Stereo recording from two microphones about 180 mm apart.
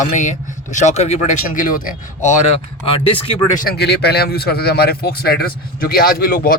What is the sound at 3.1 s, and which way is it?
Speech, 30° left (ahead or behind).